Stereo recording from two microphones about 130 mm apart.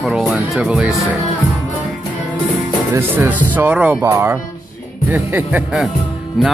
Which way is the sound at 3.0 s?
15° right (ahead or behind).